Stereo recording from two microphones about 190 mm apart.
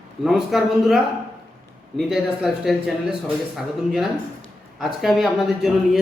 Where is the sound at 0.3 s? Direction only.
Centre (ahead or behind).